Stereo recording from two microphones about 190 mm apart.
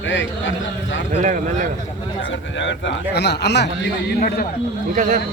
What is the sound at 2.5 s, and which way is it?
Mantra, 70° left (ahead or behind).